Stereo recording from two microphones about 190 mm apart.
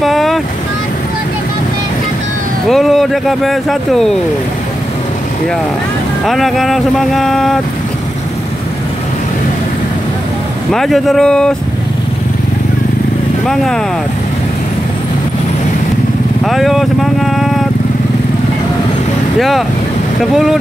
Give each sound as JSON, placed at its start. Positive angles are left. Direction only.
{"t": 0.0, "sound": "vehicle", "side_deg": 0}
{"t": 2.7, "sound": "speech", "side_deg": 0}
{"t": 6.2, "sound": "speech", "side_deg": 0}
{"t": 10.7, "sound": "speech", "side_deg": 0}
{"t": 16.4, "sound": "speech", "side_deg": 0}
{"t": 19.3, "sound": "speech", "side_deg": 0}